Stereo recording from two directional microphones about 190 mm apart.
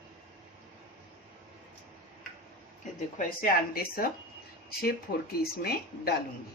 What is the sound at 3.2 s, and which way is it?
Speech, 50° left (ahead or behind).